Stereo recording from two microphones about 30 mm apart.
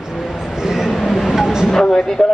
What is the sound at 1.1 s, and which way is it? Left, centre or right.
Vehicle, centre.